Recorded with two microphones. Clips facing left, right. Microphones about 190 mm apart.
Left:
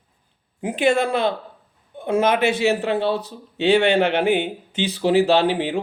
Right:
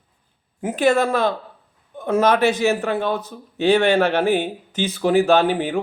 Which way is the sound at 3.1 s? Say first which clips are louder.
Left 1 dB; 35° left (ahead or behind).